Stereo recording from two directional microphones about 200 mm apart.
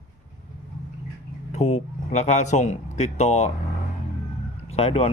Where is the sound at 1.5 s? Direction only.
35° left (ahead or behind).